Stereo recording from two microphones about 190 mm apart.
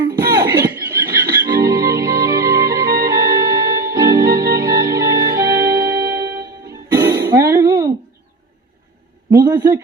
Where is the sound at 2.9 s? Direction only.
15° right (ahead or behind).